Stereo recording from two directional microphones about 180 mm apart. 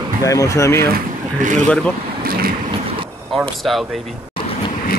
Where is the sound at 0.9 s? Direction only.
45° right (ahead or behind).